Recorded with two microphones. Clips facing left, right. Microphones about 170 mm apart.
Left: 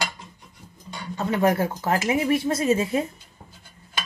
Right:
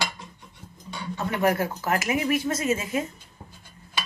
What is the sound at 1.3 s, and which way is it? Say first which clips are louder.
Speech: left 3 dB; 25° left (ahead or behind).